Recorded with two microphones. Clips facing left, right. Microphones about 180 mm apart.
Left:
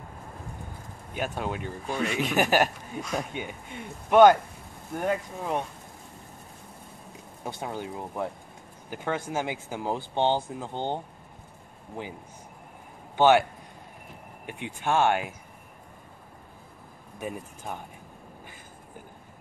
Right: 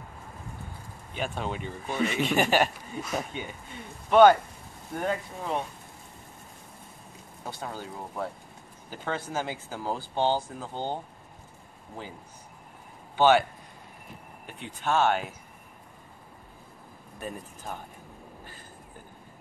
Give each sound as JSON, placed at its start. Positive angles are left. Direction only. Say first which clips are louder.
{"t": 1.1, "sound": "a man's voice", "louder": "left 1 dB", "side_deg": 10}
{"t": 3.3, "sound": "speech", "louder": "left 2 dB", "side_deg": 10}
{"t": 7.4, "sound": "speech", "louder": "left 3 dB", "side_deg": 20}
{"t": 13.1, "sound": "a man's voice", "louder": "left 1 dB", "side_deg": 15}
{"t": 14.5, "sound": "speech", "louder": "left 1 dB", "side_deg": 15}
{"t": 17.2, "sound": "speech", "louder": "left 3 dB", "side_deg": 10}